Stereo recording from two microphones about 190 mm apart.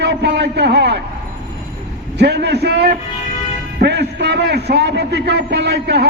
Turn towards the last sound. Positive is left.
turn(degrees=-60)  # may be behind; listen again after turning